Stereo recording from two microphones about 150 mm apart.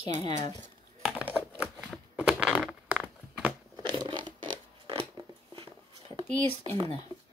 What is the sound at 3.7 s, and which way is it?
Zipper, 30° right (ahead or behind).